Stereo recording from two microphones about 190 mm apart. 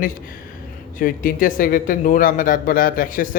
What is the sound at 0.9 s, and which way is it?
A man's voice, 50° left (ahead or behind).